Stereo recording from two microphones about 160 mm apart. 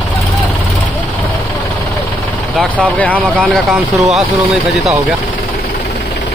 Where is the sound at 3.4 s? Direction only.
Centre (ahead or behind).